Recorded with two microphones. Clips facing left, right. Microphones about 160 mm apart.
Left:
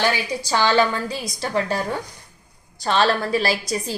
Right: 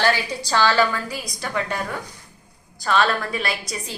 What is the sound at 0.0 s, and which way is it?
A woman's voice, 15° left (ahead or behind).